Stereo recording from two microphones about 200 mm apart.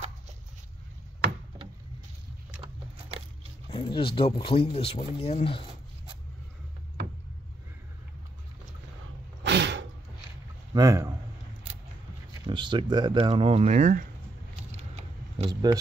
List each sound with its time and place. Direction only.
3.7 s speech: 25° left (ahead or behind)
9.4 s a sound: 60° right (ahead or behind)
10.7 s a man's voice: 15° right (ahead or behind)
12.4 s speech: 25° right (ahead or behind); by 14.0 s 40° right (ahead or behind)
14.7 s keys jangling: 35° right (ahead or behind)